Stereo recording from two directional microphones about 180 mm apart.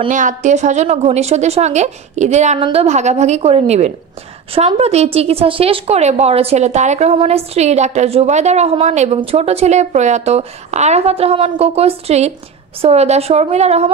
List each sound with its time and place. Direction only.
0.1 s a woman's voice: 45° right (ahead or behind)